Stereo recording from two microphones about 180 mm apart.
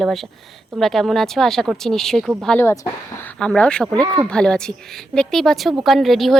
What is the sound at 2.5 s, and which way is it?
Speech, 15° left (ahead or behind).